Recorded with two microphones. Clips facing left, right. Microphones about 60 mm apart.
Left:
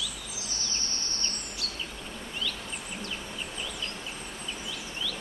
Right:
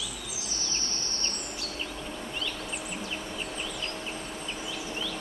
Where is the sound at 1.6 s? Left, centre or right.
Right.